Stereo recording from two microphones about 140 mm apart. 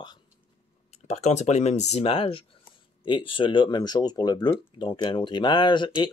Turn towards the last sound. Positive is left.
turn(degrees=35)  # may be behind; listen again after turning